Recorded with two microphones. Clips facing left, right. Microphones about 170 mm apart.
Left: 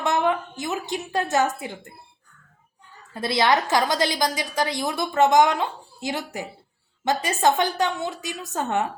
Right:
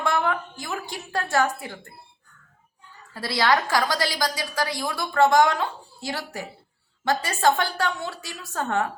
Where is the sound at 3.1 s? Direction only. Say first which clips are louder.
Left 2 dB; 20° left (ahead or behind).